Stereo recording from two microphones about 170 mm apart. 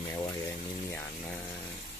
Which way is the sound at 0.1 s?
20° left (ahead or behind).